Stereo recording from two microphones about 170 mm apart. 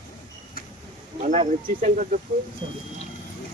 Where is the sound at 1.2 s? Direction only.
45° right (ahead or behind).